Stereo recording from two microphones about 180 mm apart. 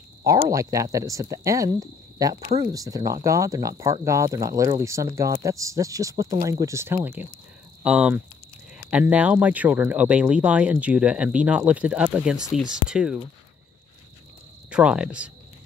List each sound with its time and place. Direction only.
0.5 s speech: 20° right (ahead or behind)
2.4 s speech: 35° right (ahead or behind)
2.7 s speech: 20° right (ahead or behind)
14.7 s speech: 5° right (ahead or behind)